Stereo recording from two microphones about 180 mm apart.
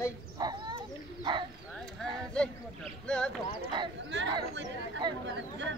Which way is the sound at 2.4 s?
5° left (ahead or behind).